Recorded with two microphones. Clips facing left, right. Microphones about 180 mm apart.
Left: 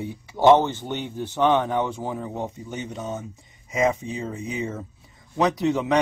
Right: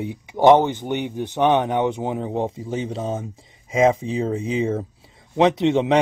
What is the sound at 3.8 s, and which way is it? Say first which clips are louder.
Speech: right 5 dB; 90° right.